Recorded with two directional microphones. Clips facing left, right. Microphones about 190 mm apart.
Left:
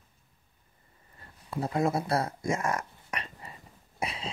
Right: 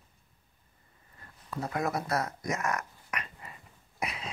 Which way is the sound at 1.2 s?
30° left (ahead or behind).